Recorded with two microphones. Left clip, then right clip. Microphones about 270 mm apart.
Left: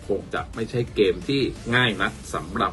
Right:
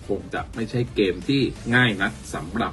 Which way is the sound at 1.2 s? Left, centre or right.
Centre.